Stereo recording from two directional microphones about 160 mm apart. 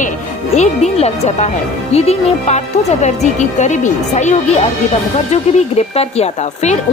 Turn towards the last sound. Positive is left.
turn(degrees=40)  # may be behind; listen again after turning